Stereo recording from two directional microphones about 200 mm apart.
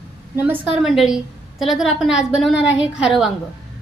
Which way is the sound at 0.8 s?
Centre (ahead or behind).